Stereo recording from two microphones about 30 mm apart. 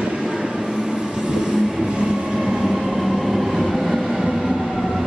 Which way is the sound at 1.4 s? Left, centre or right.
Centre.